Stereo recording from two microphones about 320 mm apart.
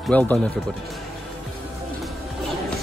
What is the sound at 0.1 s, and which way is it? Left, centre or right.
Speech, centre.